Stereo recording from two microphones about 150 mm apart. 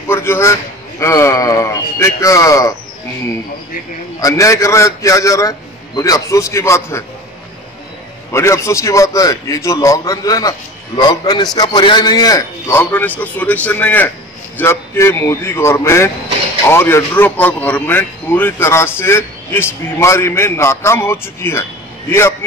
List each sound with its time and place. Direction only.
0.1 s a man's voice: 15° left (ahead or behind)
4.2 s a man's voice: 20° left (ahead or behind)
8.3 s a man's voice: 20° left (ahead or behind)